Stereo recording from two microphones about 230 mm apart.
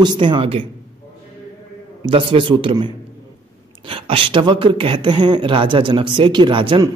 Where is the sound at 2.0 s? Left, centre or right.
Right.